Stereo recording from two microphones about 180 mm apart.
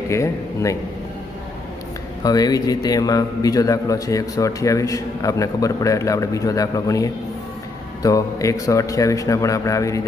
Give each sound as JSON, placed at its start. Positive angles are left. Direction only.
{"t": 0.1, "sound": "a man's voice", "side_deg": 15}
{"t": 2.2, "sound": "a man's voice", "side_deg": 20}